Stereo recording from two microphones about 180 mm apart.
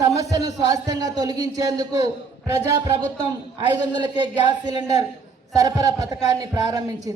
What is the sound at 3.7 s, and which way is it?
Speech, 25° right (ahead or behind).